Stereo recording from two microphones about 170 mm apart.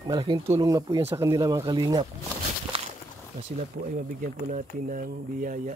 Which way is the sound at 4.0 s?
50° right (ahead or behind).